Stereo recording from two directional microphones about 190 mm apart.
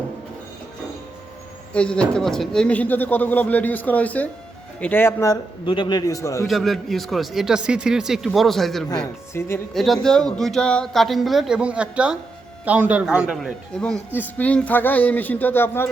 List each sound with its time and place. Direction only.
1.7 s a man's voice: 5° left (ahead or behind)
5.6 s a man's voice: 25° left (ahead or behind)
6.5 s speech: centre (ahead or behind)
8.9 s a man's voice: 15° left (ahead or behind)
9.7 s a man's voice: centre (ahead or behind)